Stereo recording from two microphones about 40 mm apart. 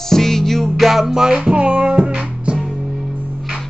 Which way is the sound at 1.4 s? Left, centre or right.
Right.